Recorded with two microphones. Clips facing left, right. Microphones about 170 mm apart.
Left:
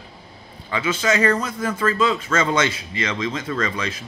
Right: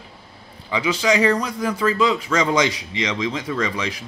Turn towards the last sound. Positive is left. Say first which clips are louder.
# right 1 dB
turn(degrees=-10)  # may be behind; listen again after turning